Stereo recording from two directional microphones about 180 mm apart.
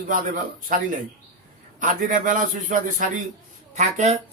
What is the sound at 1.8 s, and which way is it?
Speech, 45° right (ahead or behind).